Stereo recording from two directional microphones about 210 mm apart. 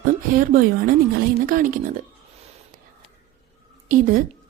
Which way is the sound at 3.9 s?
40° right (ahead or behind).